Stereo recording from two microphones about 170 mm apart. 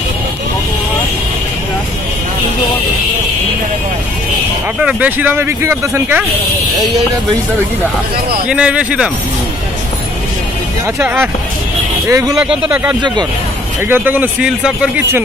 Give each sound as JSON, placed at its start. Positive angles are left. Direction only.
{"t": 4.8, "sound": "speech", "side_deg": -10}
{"t": 8.5, "sound": "speech", "side_deg": -5}
{"t": 11.0, "sound": "speech", "side_deg": -10}
{"t": 12.4, "sound": "speech", "side_deg": -5}